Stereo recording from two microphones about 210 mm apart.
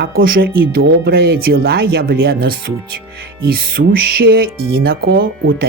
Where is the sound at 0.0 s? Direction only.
45° right (ahead or behind).